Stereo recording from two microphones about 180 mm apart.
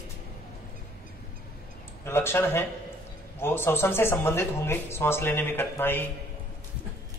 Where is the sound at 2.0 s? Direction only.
15° left (ahead or behind).